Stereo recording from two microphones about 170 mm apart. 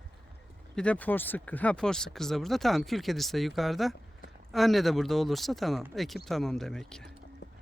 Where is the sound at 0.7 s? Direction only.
5° left (ahead or behind).